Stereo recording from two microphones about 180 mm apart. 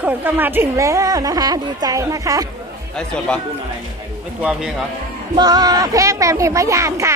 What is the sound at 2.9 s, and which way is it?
Speech, 5° left (ahead or behind).